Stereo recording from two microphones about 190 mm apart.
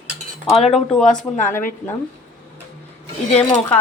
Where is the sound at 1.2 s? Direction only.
40° left (ahead or behind).